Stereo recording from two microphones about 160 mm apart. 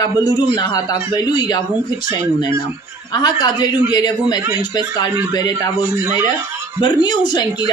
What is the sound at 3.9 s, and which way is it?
Speech, 25° left (ahead or behind).